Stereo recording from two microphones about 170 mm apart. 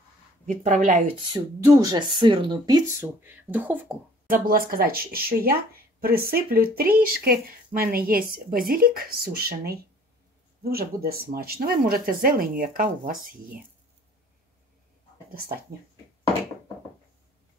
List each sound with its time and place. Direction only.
0.5 s a woman's voice: 45° right (ahead or behind)
1.3 s speech: 20° right (ahead or behind)
3.0 s speech: 10° right (ahead or behind)
4.3 s speech: 60° right (ahead or behind)